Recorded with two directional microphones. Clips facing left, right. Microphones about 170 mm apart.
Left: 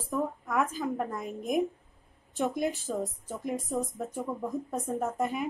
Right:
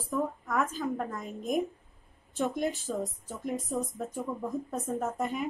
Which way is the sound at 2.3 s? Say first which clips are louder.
Left 1 dB; 15° left (ahead or behind).